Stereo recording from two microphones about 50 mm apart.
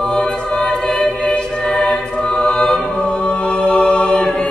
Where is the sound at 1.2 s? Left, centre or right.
Centre.